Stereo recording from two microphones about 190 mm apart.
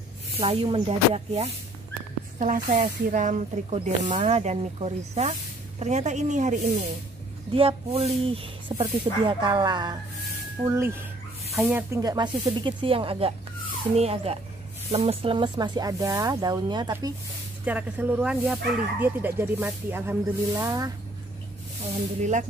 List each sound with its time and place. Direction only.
0.4 s speech: 25° right (ahead or behind)
2.3 s speech: 45° right (ahead or behind); by 17.1 s 20° right (ahead or behind)
17.6 s speech: 10° right (ahead or behind)